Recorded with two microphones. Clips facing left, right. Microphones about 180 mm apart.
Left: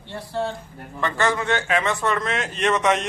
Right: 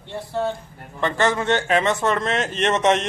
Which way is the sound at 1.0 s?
25° right (ahead or behind).